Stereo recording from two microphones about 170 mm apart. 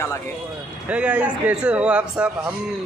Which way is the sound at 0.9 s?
5° right (ahead or behind).